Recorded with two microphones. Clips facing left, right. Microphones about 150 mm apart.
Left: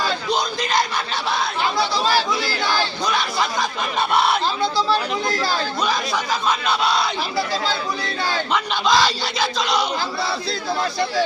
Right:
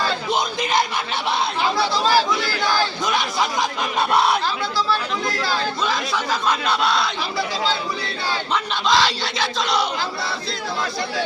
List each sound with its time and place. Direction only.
6.7 s speech: centre (ahead or behind)
8.5 s speech: centre (ahead or behind)